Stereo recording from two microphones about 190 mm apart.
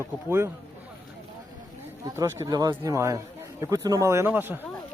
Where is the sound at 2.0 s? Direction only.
20° right (ahead or behind).